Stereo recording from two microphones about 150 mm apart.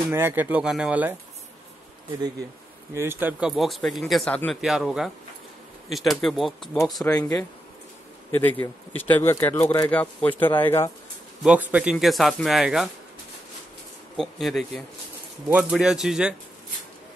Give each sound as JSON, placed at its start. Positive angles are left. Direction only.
{"t": 0.1, "sound": "speech", "side_deg": -15}
{"t": 2.9, "sound": "speech", "side_deg": -15}
{"t": 7.2, "sound": "speech", "side_deg": 25}
{"t": 8.3, "sound": "speech", "side_deg": 10}
{"t": 11.7, "sound": "speech", "side_deg": -5}
{"t": 14.1, "sound": "speech", "side_deg": 0}